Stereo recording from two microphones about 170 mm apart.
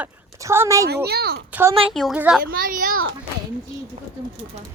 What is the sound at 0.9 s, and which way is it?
Speech, 70° right (ahead or behind).